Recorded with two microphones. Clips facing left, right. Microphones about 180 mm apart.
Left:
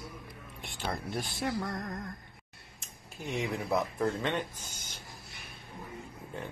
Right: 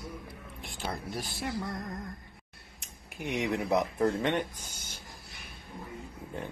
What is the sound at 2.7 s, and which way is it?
Speech, 15° right (ahead or behind).